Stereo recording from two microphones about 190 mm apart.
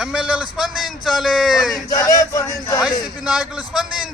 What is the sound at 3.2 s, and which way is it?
Speech, 5° right (ahead or behind).